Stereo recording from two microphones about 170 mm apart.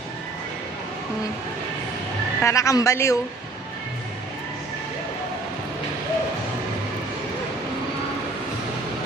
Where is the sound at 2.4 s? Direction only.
15° left (ahead or behind).